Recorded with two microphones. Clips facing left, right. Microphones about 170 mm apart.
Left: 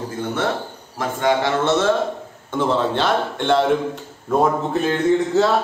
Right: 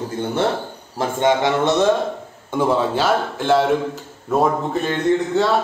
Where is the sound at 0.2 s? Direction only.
30° right (ahead or behind); by 5.6 s centre (ahead or behind).